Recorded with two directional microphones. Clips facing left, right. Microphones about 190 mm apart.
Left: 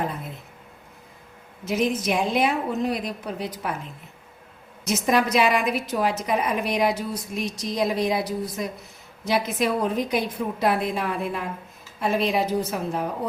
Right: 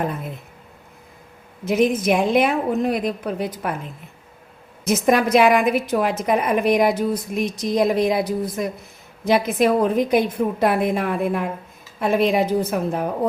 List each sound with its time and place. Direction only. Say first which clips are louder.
1.6 s a woman's voice: right 6 dB; 55° right (ahead or behind)
4.9 s a woman's voice: right 5 dB; 55° right (ahead or behind)